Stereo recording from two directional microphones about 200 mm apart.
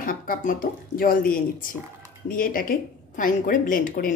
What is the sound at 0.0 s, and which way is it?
A woman's voice, 45° left (ahead or behind).